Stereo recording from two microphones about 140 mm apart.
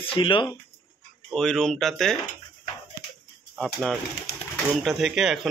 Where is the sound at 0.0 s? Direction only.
40° left (ahead or behind).